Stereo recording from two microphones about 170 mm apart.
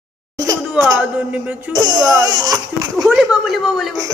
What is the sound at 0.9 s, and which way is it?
Speech, 5° right (ahead or behind).